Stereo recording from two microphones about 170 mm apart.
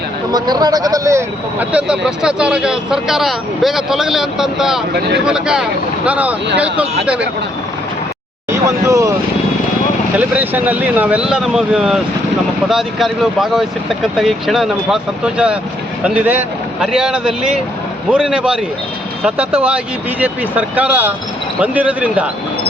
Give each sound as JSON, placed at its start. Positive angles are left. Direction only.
{"t": 0.3, "sound": "speech", "side_deg": -25}
{"t": 8.5, "sound": "speech", "side_deg": -20}
{"t": 10.2, "sound": "speech", "side_deg": -10}
{"t": 19.6, "sound": "speech", "side_deg": -10}